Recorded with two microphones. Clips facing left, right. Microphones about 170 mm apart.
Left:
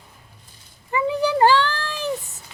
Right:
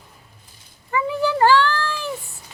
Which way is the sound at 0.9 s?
20° left (ahead or behind).